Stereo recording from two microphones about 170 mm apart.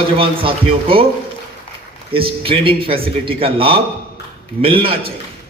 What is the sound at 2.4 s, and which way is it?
A man's voice, 30° right (ahead or behind).